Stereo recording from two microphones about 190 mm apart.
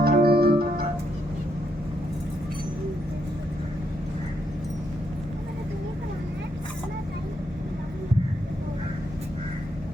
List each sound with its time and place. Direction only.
0.0 s music: 55° right (ahead or behind)